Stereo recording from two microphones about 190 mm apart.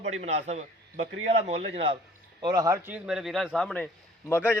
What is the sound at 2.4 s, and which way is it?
A man's voice, 20° right (ahead or behind).